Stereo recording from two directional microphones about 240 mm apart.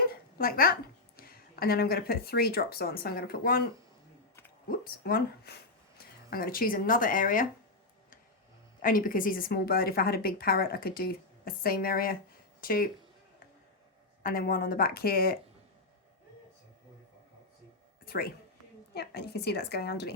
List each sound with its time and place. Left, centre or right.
0.1 s a woman's voice: left
4.7 s a woman's voice: left
8.8 s a woman's voice: left
14.2 s a woman's voice: left
18.0 s a sound: left
18.9 s a woman's voice: left